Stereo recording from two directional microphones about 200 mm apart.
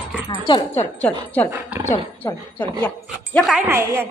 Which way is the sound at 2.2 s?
10° left (ahead or behind).